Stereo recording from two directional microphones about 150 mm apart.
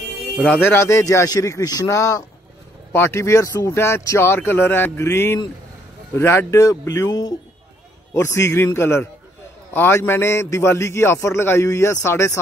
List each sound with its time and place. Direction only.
0.5 s a man's voice: 15° left (ahead or behind)